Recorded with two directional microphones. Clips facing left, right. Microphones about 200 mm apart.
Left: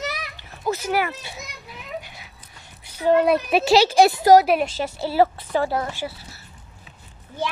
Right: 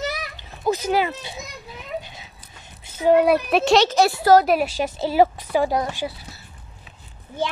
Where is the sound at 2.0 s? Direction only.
20° right (ahead or behind).